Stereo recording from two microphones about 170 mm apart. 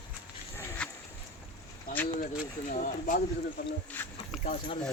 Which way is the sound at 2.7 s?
50° left (ahead or behind).